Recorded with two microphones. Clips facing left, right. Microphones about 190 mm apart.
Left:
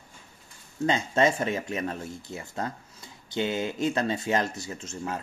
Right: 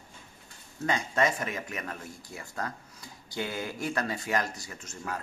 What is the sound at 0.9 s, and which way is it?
Speech, 25° left (ahead or behind).